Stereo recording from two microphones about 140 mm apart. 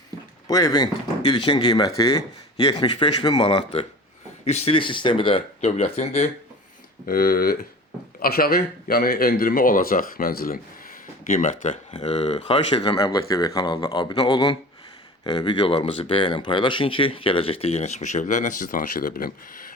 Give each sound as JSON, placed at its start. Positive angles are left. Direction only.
{"t": 0.4, "sound": "a man's voice", "side_deg": 25}
{"t": 4.4, "sound": "speech", "side_deg": 50}
{"t": 5.5, "sound": "speech", "side_deg": 55}
{"t": 7.1, "sound": "speech", "side_deg": 90}
{"t": 11.3, "sound": "speech", "side_deg": 65}
{"t": 13.0, "sound": "a man's voice", "side_deg": 25}